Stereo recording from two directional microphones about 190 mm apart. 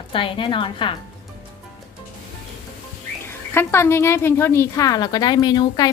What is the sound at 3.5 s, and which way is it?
A woman's voice, 15° left (ahead or behind).